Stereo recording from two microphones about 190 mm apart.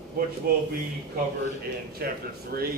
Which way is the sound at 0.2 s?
50° right (ahead or behind).